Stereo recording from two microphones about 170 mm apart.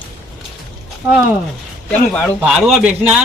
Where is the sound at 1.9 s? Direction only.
10° left (ahead or behind).